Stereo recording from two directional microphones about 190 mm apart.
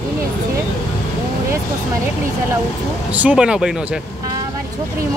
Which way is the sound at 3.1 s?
5° right (ahead or behind).